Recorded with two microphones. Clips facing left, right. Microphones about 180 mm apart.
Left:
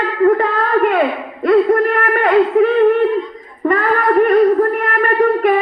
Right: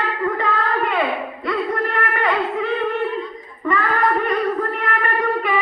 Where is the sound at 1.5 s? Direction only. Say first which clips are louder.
Left 11 dB; 50° left (ahead or behind).